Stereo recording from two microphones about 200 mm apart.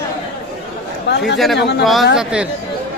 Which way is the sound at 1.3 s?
Centre (ahead or behind).